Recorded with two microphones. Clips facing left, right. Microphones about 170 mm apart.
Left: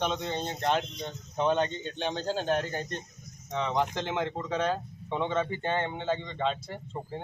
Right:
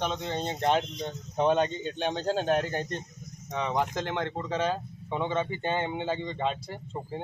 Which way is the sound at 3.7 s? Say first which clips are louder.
Right 1 dB; 10° right (ahead or behind).